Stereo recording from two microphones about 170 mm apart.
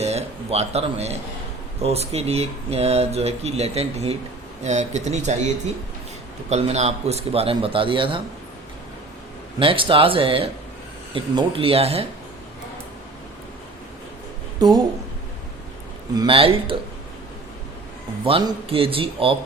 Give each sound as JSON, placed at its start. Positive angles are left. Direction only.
{"t": 0.0, "sound": "a sound", "side_deg": -40}
{"t": 1.8, "sound": "speech", "side_deg": -35}
{"t": 6.5, "sound": "speech", "side_deg": -40}
{"t": 9.6, "sound": "speech", "side_deg": -30}
{"t": 14.6, "sound": "a woman's voice", "side_deg": -25}
{"t": 16.1, "sound": "speech", "side_deg": -30}
{"t": 18.3, "sound": "speech", "side_deg": -30}